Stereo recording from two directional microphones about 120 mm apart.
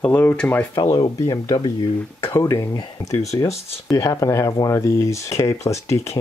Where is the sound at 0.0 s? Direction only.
15° left (ahead or behind).